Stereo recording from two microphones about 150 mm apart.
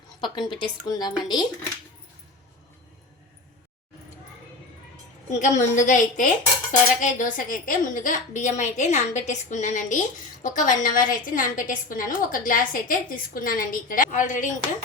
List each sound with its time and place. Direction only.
0.2 s a woman's voice: 30° left (ahead or behind)
5.3 s dishes: 55° left (ahead or behind)